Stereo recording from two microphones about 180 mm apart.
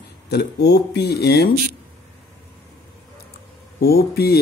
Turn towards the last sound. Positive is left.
turn(degrees=60)  # may be behind; listen again after turning